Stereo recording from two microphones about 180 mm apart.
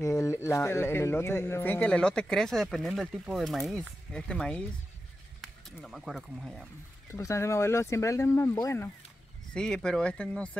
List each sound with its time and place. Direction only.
0.0 s a man's voice: 15° left (ahead or behind); by 6.7 s centre (ahead or behind)
7.1 s a man's voice: 15° left (ahead or behind)
9.5 s speech: 5° left (ahead or behind)